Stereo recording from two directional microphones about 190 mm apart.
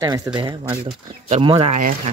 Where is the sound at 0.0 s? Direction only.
20° right (ahead or behind).